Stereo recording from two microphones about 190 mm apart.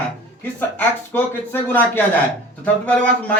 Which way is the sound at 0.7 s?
10° left (ahead or behind).